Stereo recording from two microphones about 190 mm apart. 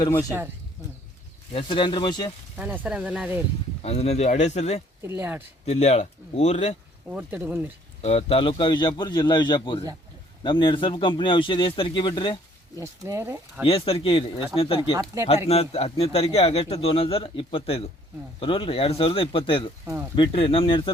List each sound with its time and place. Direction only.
0.0 s speech: 20° left (ahead or behind)
1.5 s speech: 25° left (ahead or behind)
2.6 s speech: 10° right (ahead or behind)
3.8 s speech: 35° left (ahead or behind)
5.0 s speech: 10° right (ahead or behind)
5.6 s speech: 35° left (ahead or behind)
7.1 s speech: 10° right (ahead or behind)
8.0 s speech: 30° left (ahead or behind)
12.7 s speech: 15° right (ahead or behind)
13.7 s speech: 30° left (ahead or behind)
19.8 s speech: 10° right (ahead or behind)
20.1 s speech: 25° left (ahead or behind)